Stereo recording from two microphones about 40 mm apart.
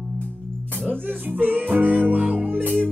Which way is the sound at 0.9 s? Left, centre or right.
Right.